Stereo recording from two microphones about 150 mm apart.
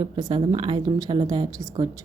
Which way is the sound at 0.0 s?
30° right (ahead or behind).